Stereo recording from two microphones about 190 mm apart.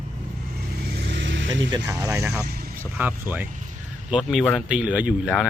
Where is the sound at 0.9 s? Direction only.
65° right (ahead or behind).